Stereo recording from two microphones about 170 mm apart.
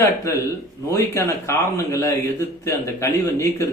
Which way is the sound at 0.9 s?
15° left (ahead or behind).